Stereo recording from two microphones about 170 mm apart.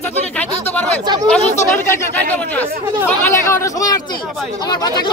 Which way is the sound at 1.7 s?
10° left (ahead or behind).